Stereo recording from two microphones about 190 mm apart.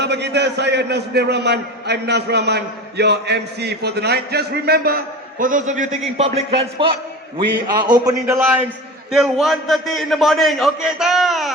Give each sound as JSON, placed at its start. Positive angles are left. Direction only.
{"t": 0.0, "sound": "a man's voice", "side_deg": -60}
{"t": 9.1, "sound": "a man's voice", "side_deg": 0}